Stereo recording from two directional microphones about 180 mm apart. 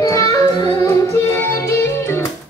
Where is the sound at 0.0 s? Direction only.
20° left (ahead or behind).